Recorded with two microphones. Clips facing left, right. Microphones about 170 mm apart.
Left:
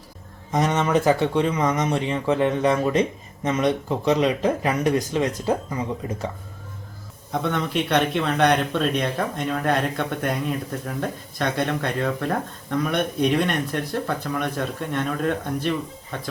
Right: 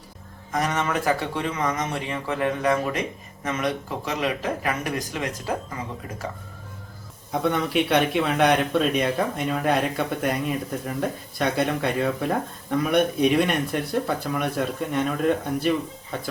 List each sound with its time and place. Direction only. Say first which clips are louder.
0.5 s speech: left 4 dB; 20° left (ahead or behind)
7.4 s speech: right 2 dB; 5° right (ahead or behind)